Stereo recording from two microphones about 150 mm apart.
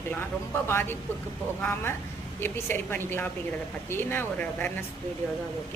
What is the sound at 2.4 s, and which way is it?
A woman's voice, 15° left (ahead or behind).